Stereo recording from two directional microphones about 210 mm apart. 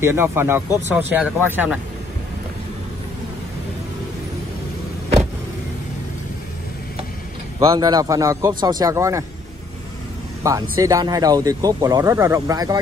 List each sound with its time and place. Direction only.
0.0 s speech: 10° right (ahead or behind)
7.5 s speech: 15° right (ahead or behind)
10.8 s speech: 15° right (ahead or behind)